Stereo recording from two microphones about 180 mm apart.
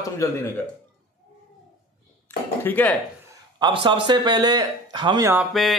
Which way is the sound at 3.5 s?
25° right (ahead or behind).